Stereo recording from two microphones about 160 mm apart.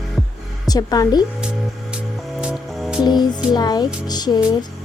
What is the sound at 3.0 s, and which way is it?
Speech, 25° left (ahead or behind).